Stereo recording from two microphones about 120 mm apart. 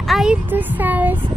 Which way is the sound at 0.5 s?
15° right (ahead or behind).